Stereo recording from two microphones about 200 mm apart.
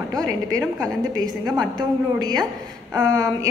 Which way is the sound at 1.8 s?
20° right (ahead or behind).